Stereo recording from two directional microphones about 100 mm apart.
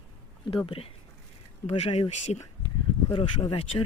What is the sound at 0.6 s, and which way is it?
Speech, 60° left (ahead or behind).